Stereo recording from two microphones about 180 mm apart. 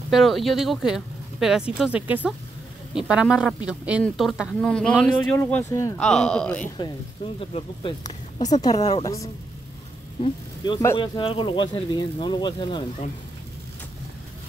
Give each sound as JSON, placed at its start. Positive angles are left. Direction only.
{"t": 0.1, "sound": "speech", "side_deg": 0}
{"t": 5.9, "sound": "speech", "side_deg": 5}
{"t": 7.3, "sound": "speech", "side_deg": 30}